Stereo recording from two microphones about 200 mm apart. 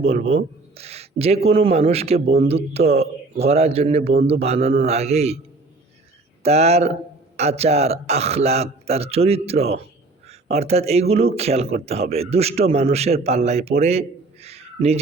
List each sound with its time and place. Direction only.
0.0 s a man's voice: 30° right (ahead or behind)
6.4 s a man's voice: 30° right (ahead or behind)
14.4 s a sound: 30° right (ahead or behind)